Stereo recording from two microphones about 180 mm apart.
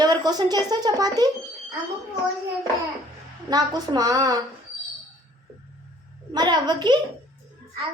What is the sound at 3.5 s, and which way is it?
Speech, 20° right (ahead or behind).